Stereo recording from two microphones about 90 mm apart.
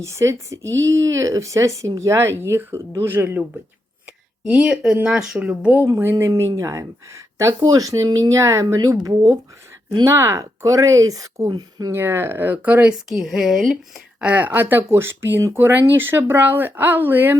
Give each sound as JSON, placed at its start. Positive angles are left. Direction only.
{"t": 0.0, "sound": "speech", "side_deg": -35}
{"t": 4.4, "sound": "speech", "side_deg": -15}
{"t": 5.8, "sound": "speech", "side_deg": -25}
{"t": 11.9, "sound": "speech", "side_deg": -25}
{"t": 13.1, "sound": "a woman's voice", "side_deg": -5}
{"t": 14.2, "sound": "speech", "side_deg": -15}